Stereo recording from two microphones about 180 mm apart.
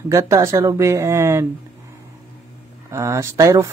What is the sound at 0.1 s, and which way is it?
Speech, 15° right (ahead or behind).